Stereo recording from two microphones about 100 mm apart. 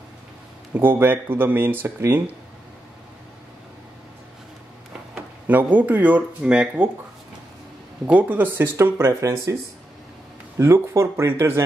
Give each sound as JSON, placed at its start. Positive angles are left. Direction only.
{"t": 0.7, "sound": "speech", "side_deg": -20}
{"t": 4.9, "sound": "speech", "side_deg": -15}
{"t": 8.1, "sound": "speech", "side_deg": -15}
{"t": 10.6, "sound": "speech", "side_deg": -30}